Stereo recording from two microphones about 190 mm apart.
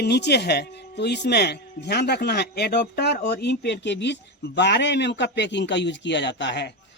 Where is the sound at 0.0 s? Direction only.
60° left (ahead or behind).